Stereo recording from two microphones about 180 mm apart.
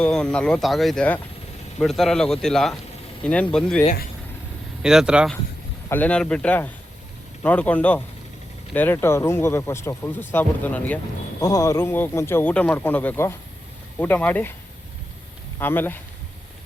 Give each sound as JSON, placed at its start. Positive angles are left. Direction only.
{"t": 0.0, "sound": "speech", "side_deg": 5}
{"t": 5.9, "sound": "speech", "side_deg": 10}
{"t": 11.3, "sound": "speech", "side_deg": 20}
{"t": 15.5, "sound": "speech", "side_deg": 10}